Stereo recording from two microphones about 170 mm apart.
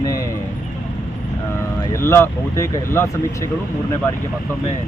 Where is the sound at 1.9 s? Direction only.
15° left (ahead or behind).